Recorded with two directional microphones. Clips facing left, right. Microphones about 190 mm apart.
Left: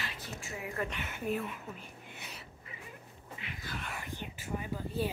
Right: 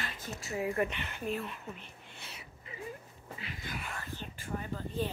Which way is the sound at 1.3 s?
10° left (ahead or behind).